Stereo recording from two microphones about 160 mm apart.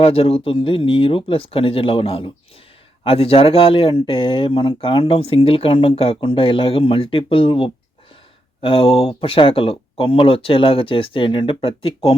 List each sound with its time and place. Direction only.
0.0 s speech: 35° left (ahead or behind)